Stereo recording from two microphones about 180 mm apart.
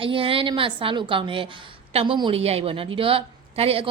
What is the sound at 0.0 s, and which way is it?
A woman's voice, 30° right (ahead or behind).